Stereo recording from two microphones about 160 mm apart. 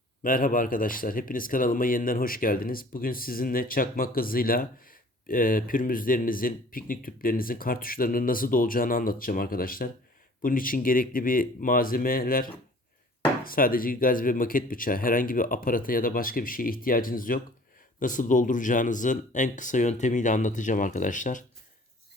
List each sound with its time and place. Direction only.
0.2 s speech: 60° left (ahead or behind)